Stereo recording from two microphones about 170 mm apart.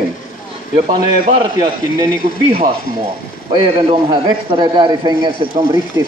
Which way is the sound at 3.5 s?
25° right (ahead or behind).